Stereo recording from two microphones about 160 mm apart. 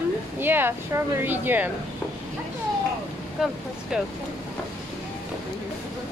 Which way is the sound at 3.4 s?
5° right (ahead or behind).